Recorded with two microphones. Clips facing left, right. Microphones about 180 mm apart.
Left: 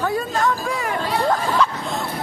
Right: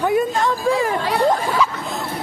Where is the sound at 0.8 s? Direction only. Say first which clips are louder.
Right 4 dB; 30° right (ahead or behind).